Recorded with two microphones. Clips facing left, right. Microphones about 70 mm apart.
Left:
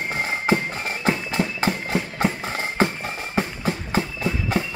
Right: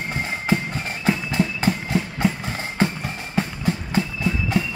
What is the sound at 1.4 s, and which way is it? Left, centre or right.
Clip-clop, left.